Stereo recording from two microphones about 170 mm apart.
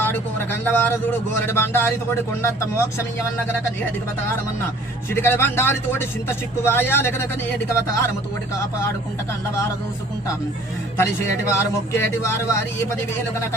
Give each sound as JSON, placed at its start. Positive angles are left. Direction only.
{"t": 0.0, "sound": "a sound", "side_deg": 10}
{"t": 1.4, "sound": "a man's voice", "side_deg": 15}
{"t": 5.1, "sound": "a man's voice", "side_deg": 15}
{"t": 10.9, "sound": "a man's voice", "side_deg": 15}